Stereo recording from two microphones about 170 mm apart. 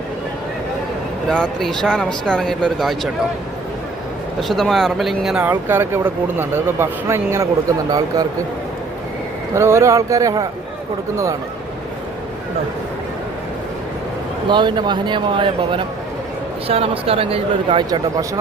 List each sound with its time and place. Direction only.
1.3 s speech: 5° left (ahead or behind)
4.4 s speech: centre (ahead or behind); by 8.3 s 20° right (ahead or behind)
9.6 s speech: 15° right (ahead or behind)
14.5 s speech: 25° right (ahead or behind)